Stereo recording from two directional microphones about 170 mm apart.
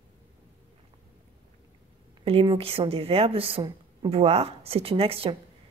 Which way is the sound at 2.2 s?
35° right (ahead or behind).